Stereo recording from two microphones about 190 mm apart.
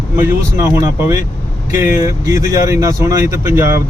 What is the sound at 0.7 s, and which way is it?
Speech, 15° right (ahead or behind).